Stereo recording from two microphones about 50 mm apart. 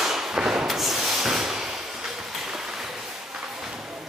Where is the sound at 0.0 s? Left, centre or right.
Centre.